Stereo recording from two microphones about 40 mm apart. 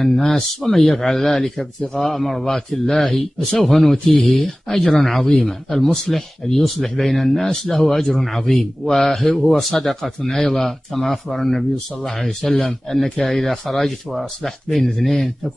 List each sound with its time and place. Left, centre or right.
0.0 s speech: centre